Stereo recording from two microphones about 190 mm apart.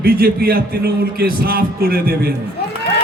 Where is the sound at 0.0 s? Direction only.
50° right (ahead or behind).